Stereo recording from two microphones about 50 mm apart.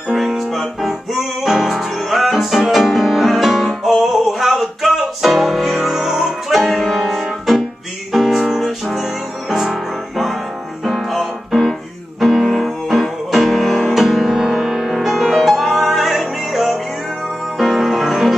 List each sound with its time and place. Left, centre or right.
0.1 s music: centre